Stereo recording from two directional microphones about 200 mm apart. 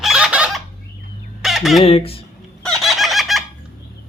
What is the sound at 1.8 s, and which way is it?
Speech, 30° left (ahead or behind).